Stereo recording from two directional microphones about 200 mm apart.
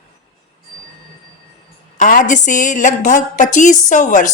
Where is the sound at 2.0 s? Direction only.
40° left (ahead or behind).